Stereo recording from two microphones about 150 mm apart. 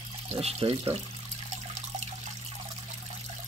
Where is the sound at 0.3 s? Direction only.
40° right (ahead or behind).